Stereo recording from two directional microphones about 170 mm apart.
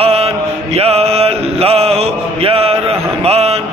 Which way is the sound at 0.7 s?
35° right (ahead or behind).